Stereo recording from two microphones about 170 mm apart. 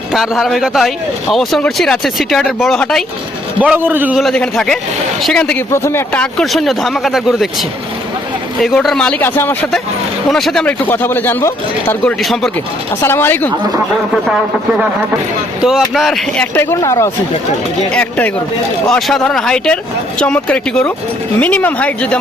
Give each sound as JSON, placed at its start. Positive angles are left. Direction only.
{"t": 0.1, "sound": "speech", "side_deg": 0}
{"t": 3.6, "sound": "a man's voice", "side_deg": -10}
{"t": 4.2, "sound": "speech", "side_deg": 0}
{"t": 8.6, "sound": "speech", "side_deg": 0}
{"t": 10.2, "sound": "speech", "side_deg": 0}
{"t": 12.2, "sound": "speech", "side_deg": 0}
{"t": 13.0, "sound": "speech", "side_deg": 15}
{"t": 16.0, "sound": "speech", "side_deg": 0}
{"t": 16.6, "sound": "speech", "side_deg": 15}
{"t": 18.9, "sound": "speech", "side_deg": 0}